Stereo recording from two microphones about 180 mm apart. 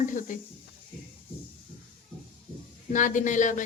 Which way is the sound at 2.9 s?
45° left (ahead or behind).